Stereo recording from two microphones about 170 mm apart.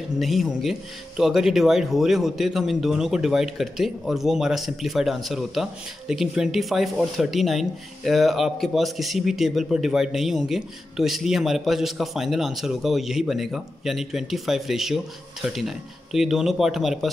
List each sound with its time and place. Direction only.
0.2 s speech: centre (ahead or behind)